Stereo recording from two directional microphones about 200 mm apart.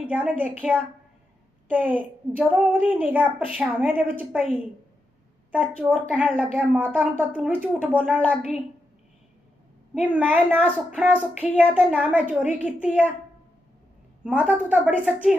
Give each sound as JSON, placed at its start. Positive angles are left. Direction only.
{"t": 0.1, "sound": "a woman's voice", "side_deg": -5}
{"t": 9.9, "sound": "a woman's voice", "side_deg": -5}
{"t": 14.5, "sound": "a woman's voice", "side_deg": -10}